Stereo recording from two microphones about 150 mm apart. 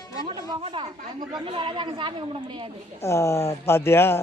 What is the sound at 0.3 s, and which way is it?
A woman's voice, 35° right (ahead or behind).